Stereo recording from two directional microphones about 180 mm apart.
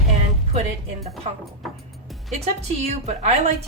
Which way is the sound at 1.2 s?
35° right (ahead or behind).